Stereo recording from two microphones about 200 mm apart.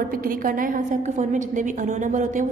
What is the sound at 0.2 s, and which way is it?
A woman's voice, 45° right (ahead or behind).